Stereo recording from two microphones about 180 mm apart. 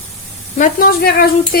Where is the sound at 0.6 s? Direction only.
55° left (ahead or behind).